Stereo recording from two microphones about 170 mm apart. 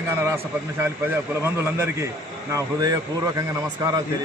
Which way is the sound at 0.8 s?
15° right (ahead or behind).